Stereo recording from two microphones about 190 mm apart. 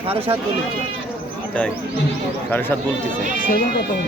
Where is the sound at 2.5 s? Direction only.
10° left (ahead or behind).